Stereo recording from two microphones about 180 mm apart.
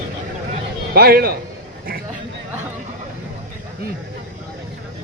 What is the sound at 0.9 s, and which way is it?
Speech, 60° right (ahead or behind).